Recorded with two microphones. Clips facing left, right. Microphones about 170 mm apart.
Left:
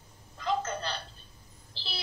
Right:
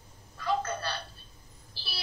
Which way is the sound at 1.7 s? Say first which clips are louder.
Left 3 dB; 20° left (ahead or behind).